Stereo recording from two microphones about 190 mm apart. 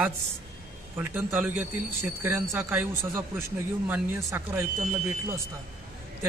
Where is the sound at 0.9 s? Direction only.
10° right (ahead or behind).